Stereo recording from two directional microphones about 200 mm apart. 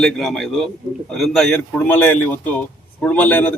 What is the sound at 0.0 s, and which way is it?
A man's voice, centre (ahead or behind).